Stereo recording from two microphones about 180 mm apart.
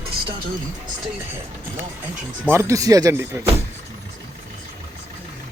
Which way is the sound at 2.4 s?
15° right (ahead or behind).